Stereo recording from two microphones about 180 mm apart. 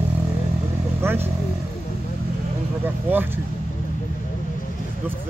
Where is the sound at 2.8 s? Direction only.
10° right (ahead or behind).